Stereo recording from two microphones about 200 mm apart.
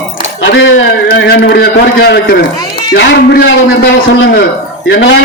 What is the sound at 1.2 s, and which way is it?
A man's voice, 50° left (ahead or behind).